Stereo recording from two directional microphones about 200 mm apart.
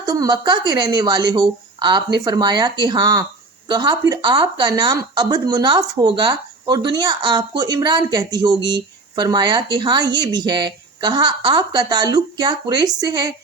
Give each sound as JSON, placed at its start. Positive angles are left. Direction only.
{"t": 0.0, "sound": "speech", "side_deg": -20}